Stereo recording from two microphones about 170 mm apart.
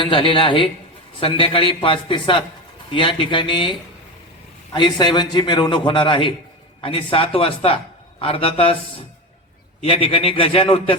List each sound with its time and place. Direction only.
0.0 s a man's voice: 30° left (ahead or behind)
4.7 s a man's voice: 25° left (ahead or behind)